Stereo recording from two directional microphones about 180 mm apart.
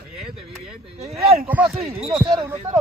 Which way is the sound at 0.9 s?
35° right (ahead or behind).